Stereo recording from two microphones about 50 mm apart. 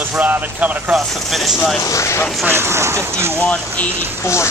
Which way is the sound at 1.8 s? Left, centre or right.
Left.